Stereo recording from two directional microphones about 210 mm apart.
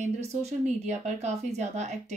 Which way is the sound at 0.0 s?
30° right (ahead or behind).